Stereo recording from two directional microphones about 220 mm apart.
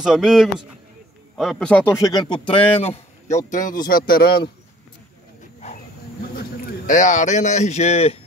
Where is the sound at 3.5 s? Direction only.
35° left (ahead or behind).